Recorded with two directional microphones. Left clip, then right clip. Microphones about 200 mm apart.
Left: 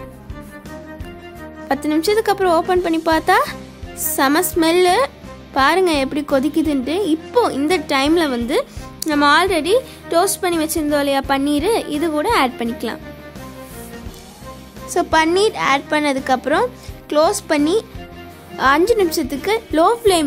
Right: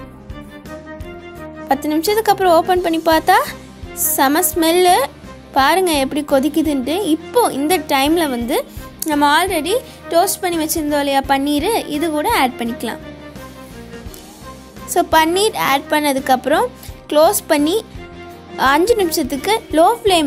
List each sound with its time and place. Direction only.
1.7 s speech: 10° right (ahead or behind)
14.9 s speech: 15° right (ahead or behind)